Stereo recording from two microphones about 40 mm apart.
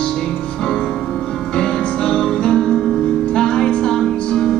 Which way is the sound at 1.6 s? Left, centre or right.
Centre.